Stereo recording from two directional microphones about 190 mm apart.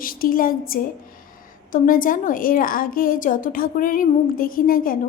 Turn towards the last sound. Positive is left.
turn(degrees=50)  # may be behind; listen again after turning